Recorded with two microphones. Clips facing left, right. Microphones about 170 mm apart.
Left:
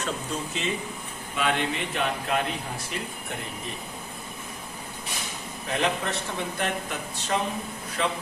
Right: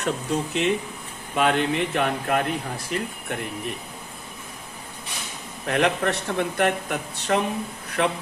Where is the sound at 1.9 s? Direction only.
50° right (ahead or behind).